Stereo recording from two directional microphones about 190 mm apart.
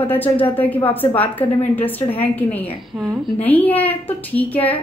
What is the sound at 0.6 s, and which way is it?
A woman's voice, 10° left (ahead or behind).